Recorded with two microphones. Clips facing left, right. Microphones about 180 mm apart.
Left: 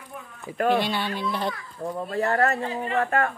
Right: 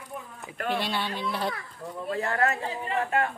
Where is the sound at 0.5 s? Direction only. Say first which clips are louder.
Left 8 dB; 45° left (ahead or behind).